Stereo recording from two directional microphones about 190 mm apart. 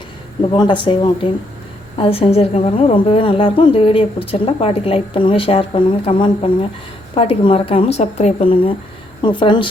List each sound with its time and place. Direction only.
0.5 s a woman's voice: 25° left (ahead or behind)